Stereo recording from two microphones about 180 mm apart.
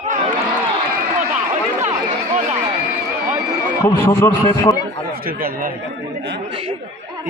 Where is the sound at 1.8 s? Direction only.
35° right (ahead or behind).